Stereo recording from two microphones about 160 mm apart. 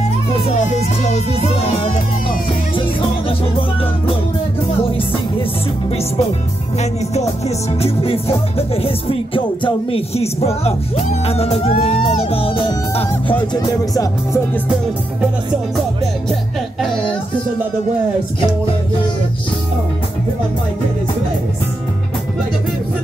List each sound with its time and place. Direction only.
0.6 s music: 50° left (ahead or behind)
6.8 s music: 40° left (ahead or behind)
13.5 s speech: 25° left (ahead or behind)